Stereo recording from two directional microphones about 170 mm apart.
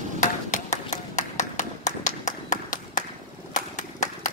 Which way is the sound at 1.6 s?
45° left (ahead or behind).